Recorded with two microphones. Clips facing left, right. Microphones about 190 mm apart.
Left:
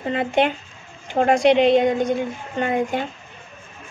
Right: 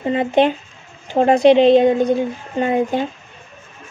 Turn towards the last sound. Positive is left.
turn(degrees=-25)  # may be behind; listen again after turning